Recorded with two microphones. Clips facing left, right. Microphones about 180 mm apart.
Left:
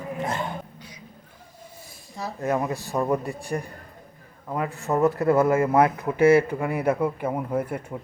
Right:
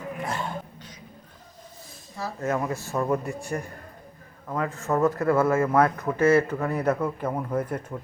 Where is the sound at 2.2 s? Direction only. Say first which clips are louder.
Left 2 dB; 15° left (ahead or behind).